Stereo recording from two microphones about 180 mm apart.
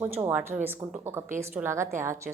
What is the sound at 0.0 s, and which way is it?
A woman's voice, 15° right (ahead or behind).